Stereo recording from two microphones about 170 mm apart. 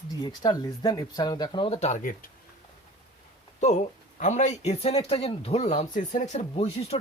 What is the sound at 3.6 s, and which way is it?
Speech, 45° left (ahead or behind).